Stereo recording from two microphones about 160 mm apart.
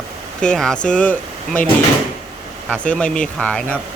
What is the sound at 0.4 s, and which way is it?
Speech, 5° left (ahead or behind).